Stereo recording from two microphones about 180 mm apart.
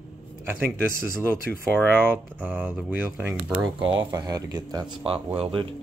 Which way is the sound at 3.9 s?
25° right (ahead or behind).